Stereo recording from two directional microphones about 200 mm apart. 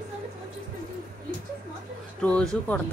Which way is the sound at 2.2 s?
5° left (ahead or behind).